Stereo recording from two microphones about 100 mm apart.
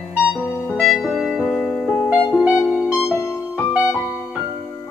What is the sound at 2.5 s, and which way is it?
Music, 30° left (ahead or behind).